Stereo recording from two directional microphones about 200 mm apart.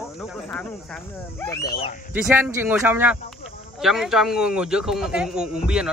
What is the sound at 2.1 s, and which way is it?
Speech, 10° right (ahead or behind).